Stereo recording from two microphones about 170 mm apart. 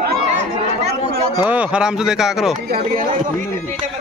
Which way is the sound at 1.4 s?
10° right (ahead or behind).